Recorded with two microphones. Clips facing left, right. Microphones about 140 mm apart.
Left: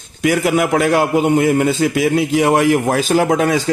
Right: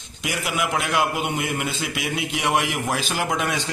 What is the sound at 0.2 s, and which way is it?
A man's voice, 45° left (ahead or behind).